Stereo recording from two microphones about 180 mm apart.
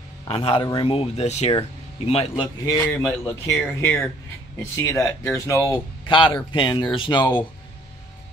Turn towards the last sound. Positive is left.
turn(degrees=25)  # may be behind; listen again after turning